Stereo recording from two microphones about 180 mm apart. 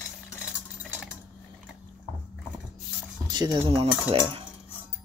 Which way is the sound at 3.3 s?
25° right (ahead or behind).